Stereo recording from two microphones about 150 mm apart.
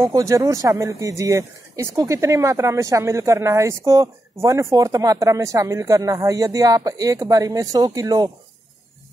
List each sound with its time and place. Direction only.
0.0 s speech: 20° right (ahead or behind)